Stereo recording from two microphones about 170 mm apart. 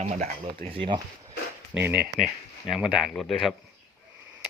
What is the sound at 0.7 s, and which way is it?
Speech, 30° right (ahead or behind).